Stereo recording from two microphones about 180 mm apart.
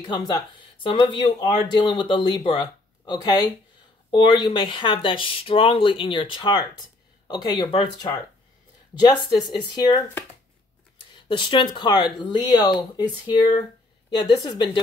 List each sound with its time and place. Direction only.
0.0 s speech: 25° left (ahead or behind)
11.1 s speech: 25° left (ahead or behind)